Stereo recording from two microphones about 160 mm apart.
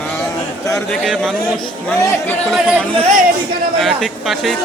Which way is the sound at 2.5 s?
5° right (ahead or behind).